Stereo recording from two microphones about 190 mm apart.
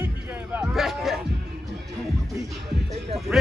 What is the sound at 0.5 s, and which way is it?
Music, 5° right (ahead or behind).